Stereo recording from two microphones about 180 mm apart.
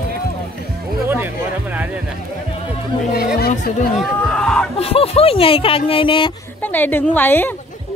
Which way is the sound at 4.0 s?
5° left (ahead or behind).